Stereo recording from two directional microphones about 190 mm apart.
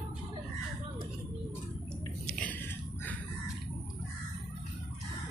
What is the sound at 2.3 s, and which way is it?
Biting, 5° left (ahead or behind).